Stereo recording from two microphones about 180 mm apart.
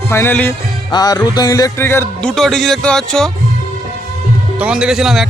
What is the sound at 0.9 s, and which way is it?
Music, 20° left (ahead or behind).